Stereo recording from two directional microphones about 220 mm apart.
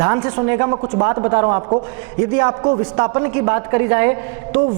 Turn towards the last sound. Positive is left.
turn(degrees=-15)  # may be behind; listen again after turning